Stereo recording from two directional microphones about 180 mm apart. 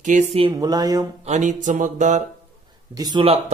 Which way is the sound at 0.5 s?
20° right (ahead or behind).